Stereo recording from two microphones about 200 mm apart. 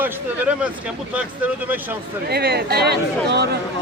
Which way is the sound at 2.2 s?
55° right (ahead or behind).